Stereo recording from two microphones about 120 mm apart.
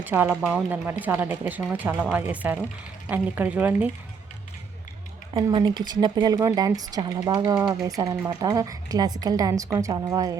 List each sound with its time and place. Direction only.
0.0 s a woman's voice: 15° right (ahead or behind)
5.4 s speech: 35° right (ahead or behind)